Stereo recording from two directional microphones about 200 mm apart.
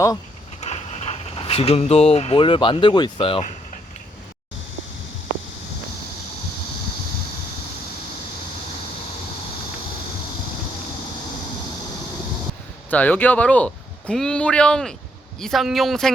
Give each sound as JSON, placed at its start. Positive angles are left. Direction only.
{"t": 0.6, "sound": "speech", "side_deg": 35}
{"t": 12.9, "sound": "speech", "side_deg": 10}